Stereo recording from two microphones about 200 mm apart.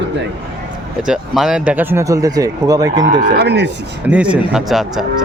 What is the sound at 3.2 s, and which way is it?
Speech, 55° right (ahead or behind).